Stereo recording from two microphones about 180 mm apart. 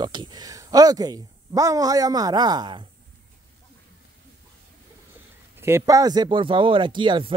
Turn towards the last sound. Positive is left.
turn(degrees=-25)  # may be behind; listen again after turning